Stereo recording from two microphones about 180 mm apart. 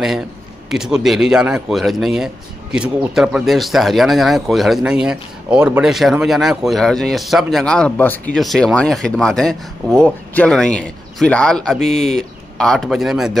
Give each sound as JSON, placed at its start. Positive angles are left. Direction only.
{"t": 0.7, "sound": "speech", "side_deg": -5}